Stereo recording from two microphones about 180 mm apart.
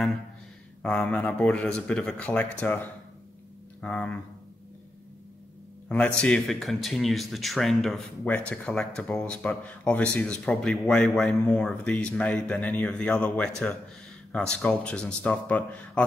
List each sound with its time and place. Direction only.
0.8 s speech: 5° left (ahead or behind)
5.9 s speech: 5° left (ahead or behind)